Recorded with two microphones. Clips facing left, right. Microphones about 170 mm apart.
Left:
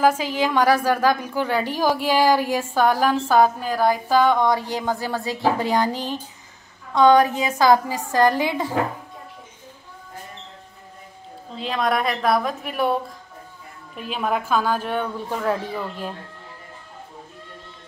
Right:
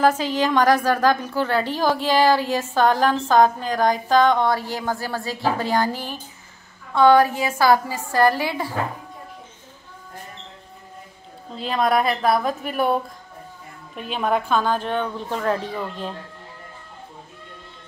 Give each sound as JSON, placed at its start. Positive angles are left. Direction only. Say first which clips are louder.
{"t": 0.0, "sound": "a woman's voice", "louder": "even", "side_deg": 10}
{"t": 11.5, "sound": "a woman's voice", "louder": "right 2 dB", "side_deg": 0}